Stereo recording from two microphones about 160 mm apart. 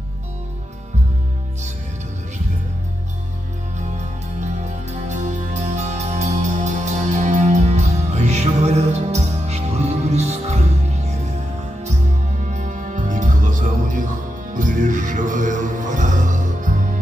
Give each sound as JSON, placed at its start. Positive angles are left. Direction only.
{"t": 4.4, "sound": "music", "side_deg": -50}
{"t": 12.4, "sound": "music", "side_deg": -50}